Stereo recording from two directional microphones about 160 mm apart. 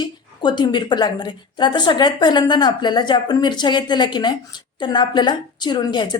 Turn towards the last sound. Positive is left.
turn(degrees=30)  # may be behind; listen again after turning